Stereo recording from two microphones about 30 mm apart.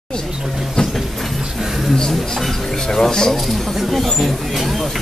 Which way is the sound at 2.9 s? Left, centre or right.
Centre.